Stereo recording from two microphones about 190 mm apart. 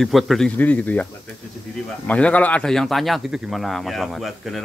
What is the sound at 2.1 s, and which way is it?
Speech, 5° left (ahead or behind).